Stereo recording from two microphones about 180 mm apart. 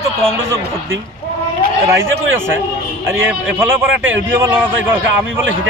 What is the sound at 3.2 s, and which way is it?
A man's voice, 10° right (ahead or behind).